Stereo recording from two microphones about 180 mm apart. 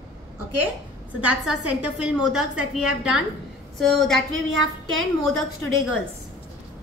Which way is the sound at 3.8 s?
Centre (ahead or behind).